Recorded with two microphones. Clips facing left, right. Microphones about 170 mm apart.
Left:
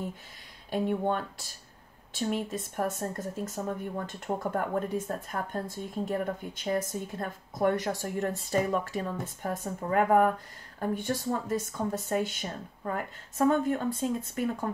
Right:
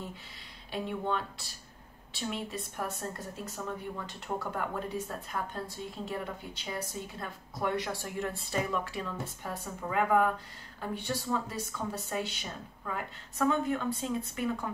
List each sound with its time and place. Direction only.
0.7 s a woman's voice: 45° left (ahead or behind)